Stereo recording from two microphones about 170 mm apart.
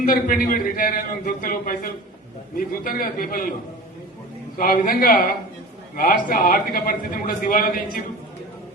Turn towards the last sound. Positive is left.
turn(degrees=55)  # may be behind; listen again after turning